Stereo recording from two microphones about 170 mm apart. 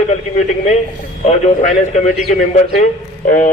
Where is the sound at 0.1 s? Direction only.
40° left (ahead or behind).